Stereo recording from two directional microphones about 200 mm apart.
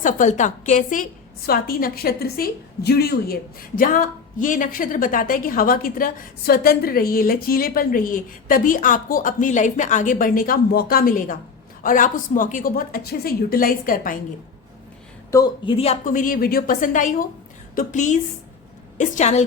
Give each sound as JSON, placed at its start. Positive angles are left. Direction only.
{"t": 0.0, "sound": "a woman's voice", "side_deg": 40}
{"t": 15.3, "sound": "a woman's voice", "side_deg": 20}